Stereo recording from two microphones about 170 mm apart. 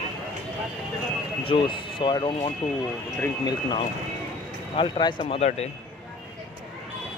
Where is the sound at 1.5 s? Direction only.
30° left (ahead or behind).